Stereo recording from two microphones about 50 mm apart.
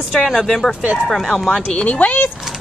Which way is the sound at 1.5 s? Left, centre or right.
Left.